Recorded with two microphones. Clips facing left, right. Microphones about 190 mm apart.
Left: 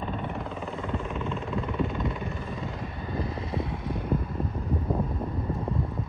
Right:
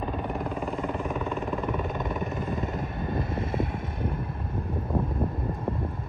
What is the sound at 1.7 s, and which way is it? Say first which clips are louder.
Vehicle: even; 50° right (ahead or behind).